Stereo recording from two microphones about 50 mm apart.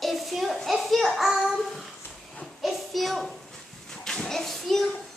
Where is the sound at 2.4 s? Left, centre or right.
Centre.